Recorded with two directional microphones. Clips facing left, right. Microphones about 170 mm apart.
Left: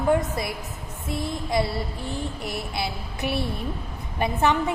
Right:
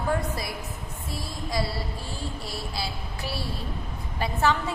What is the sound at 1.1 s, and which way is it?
A woman's voice, 20° left (ahead or behind).